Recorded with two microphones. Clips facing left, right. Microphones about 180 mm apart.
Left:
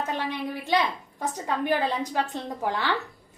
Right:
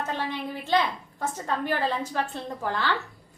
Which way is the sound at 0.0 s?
15° left (ahead or behind).